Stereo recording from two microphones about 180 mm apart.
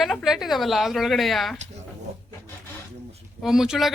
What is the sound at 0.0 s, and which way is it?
A woman's voice, centre (ahead or behind).